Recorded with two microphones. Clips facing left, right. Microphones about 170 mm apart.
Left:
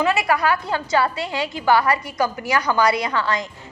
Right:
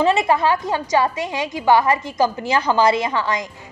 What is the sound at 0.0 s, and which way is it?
A woman's voice, 25° right (ahead or behind).